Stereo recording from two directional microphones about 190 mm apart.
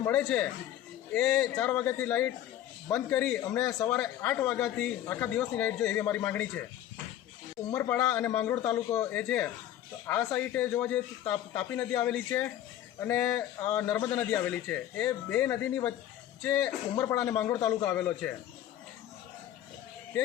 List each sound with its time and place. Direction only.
0.0 s a man's voice: 10° left (ahead or behind)
7.7 s a man's voice: 10° left (ahead or behind)